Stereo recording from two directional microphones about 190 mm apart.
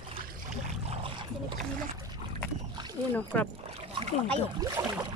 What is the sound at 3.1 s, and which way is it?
Speech, 10° left (ahead or behind).